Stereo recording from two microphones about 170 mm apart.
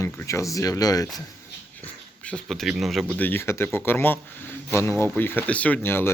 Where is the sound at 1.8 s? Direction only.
5° left (ahead or behind).